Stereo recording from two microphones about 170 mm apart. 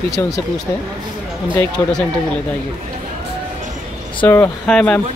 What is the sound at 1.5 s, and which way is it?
Speech, 5° left (ahead or behind).